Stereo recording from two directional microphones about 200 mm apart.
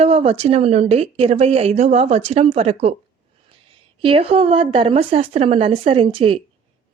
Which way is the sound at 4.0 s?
30° right (ahead or behind).